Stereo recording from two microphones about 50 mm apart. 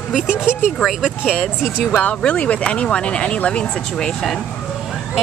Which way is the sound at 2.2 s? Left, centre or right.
Left.